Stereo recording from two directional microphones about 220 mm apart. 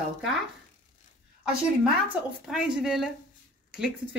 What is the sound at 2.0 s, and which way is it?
Speech, 5° right (ahead or behind).